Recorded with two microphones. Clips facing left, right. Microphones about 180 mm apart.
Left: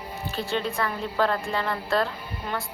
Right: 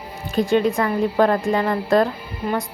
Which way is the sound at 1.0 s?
45° right (ahead or behind).